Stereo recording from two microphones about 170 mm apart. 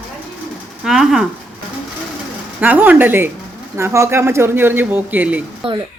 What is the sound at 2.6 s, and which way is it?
A woman's voice, 10° right (ahead or behind).